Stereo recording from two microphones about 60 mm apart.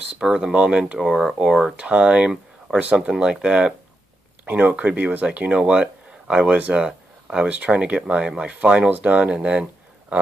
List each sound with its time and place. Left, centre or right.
0.1 s speech: centre
0.9 s speech: centre
4.5 s speech: right